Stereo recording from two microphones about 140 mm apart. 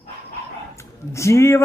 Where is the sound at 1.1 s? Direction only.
20° left (ahead or behind).